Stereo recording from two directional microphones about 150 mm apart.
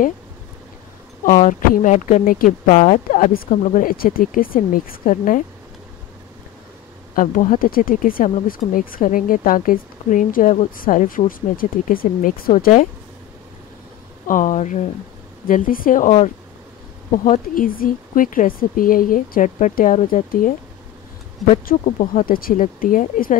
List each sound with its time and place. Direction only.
1.8 s speech: 55° left (ahead or behind)
2.6 s speech: 50° left (ahead or behind)
7.2 s speech: 60° left (ahead or behind)
14.2 s speech: 60° left (ahead or behind)
15.4 s speech: 65° left (ahead or behind)
17.1 s speech: 60° left (ahead or behind)
21.6 s speech: 65° left (ahead or behind)